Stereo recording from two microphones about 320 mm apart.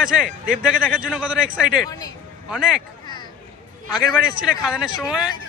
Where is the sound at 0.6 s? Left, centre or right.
Centre.